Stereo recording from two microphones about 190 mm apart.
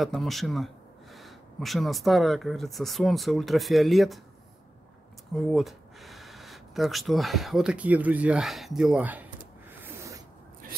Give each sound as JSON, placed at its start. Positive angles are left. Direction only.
{"t": 0.0, "sound": "speech", "side_deg": 0}
{"t": 5.3, "sound": "speech", "side_deg": 0}
{"t": 9.8, "sound": "a sound", "side_deg": -15}